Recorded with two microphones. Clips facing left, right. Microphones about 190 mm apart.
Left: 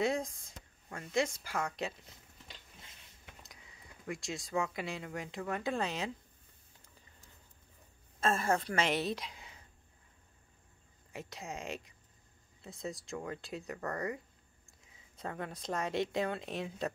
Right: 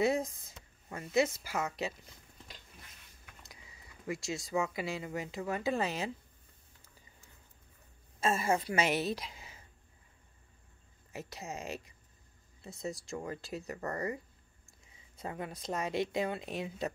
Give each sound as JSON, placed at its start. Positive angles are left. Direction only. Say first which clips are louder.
{"t": 0.0, "sound": "speech", "louder": "right 3 dB", "side_deg": -5}
{"t": 3.4, "sound": "speech", "louder": "even", "side_deg": 0}
{"t": 8.2, "sound": "speech", "louder": "right 1 dB", "side_deg": -5}
{"t": 11.1, "sound": "speech", "louder": "right 1 dB", "side_deg": -5}